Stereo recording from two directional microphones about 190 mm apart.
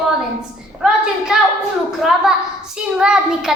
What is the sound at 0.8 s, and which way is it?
A child's voice, 5° right (ahead or behind).